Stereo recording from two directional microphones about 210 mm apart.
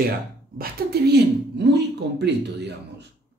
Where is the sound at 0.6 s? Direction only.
50° right (ahead or behind).